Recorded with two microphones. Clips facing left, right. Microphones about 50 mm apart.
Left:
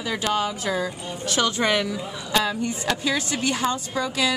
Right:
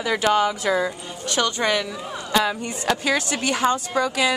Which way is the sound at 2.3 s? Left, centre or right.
Centre.